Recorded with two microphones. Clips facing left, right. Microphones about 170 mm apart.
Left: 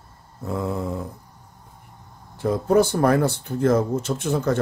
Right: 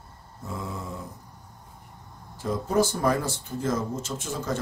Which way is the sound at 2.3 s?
60° left (ahead or behind).